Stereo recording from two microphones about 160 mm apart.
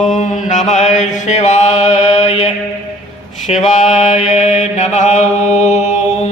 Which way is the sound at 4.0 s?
50° left (ahead or behind).